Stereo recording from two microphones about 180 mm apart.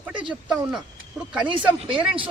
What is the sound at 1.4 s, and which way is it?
Speech, 30° right (ahead or behind).